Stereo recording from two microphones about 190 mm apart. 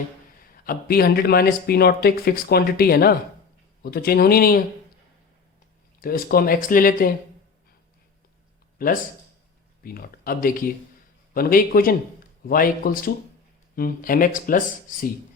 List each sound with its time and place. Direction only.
0.5 s speech: 50° left (ahead or behind)
6.0 s speech: 50° left (ahead or behind)
8.8 s speech: 50° left (ahead or behind)